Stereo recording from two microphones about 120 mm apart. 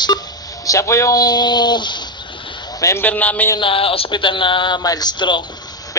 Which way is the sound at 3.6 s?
50° left (ahead or behind).